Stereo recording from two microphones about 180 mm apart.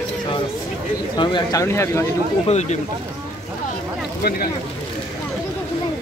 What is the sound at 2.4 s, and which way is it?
Speech, 40° left (ahead or behind).